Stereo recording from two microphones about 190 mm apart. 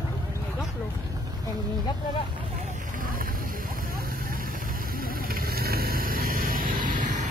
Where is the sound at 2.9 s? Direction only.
45° right (ahead or behind).